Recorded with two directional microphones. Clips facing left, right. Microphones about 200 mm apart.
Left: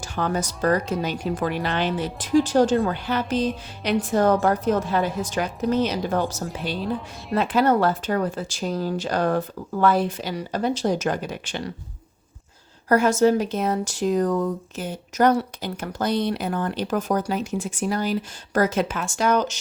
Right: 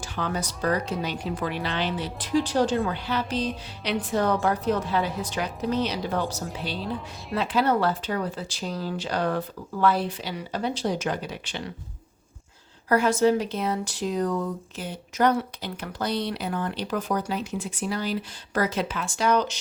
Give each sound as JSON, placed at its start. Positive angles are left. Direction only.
{"t": 0.0, "sound": "speech", "side_deg": 45}
{"t": 12.9, "sound": "speech", "side_deg": 45}